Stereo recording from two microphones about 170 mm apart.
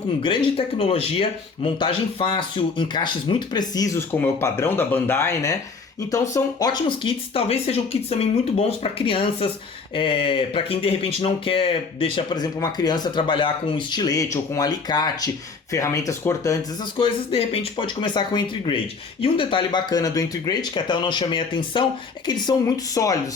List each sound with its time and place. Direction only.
0.2 s speech: 30° left (ahead or behind)
17.0 s speech: 35° left (ahead or behind)